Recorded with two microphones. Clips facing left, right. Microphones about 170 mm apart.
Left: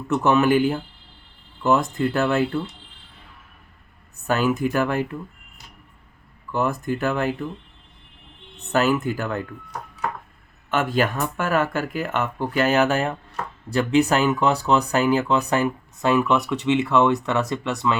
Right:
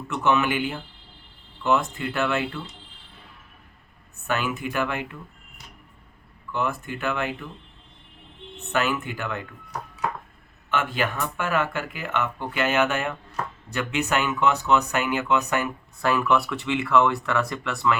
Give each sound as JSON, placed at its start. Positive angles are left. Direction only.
{"t": 0.1, "sound": "speech", "side_deg": 40}
{"t": 4.3, "sound": "speech", "side_deg": 40}
{"t": 6.5, "sound": "speech", "side_deg": 40}
{"t": 8.7, "sound": "speech", "side_deg": 40}
{"t": 10.7, "sound": "speech", "side_deg": 40}